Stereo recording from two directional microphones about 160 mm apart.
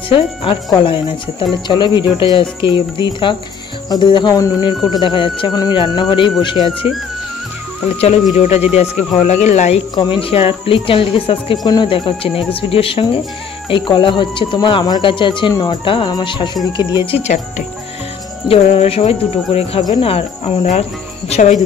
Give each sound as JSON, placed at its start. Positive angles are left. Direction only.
{"t": 0.1, "sound": "speech", "side_deg": 35}
{"t": 8.0, "sound": "speech", "side_deg": 45}
{"t": 18.5, "sound": "speech", "side_deg": 40}